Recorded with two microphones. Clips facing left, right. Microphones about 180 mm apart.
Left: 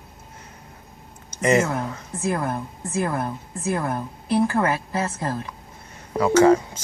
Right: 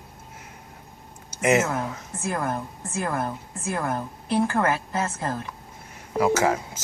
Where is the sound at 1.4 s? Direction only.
5° right (ahead or behind).